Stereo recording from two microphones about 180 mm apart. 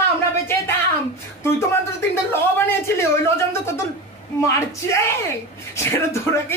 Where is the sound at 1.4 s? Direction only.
15° left (ahead or behind).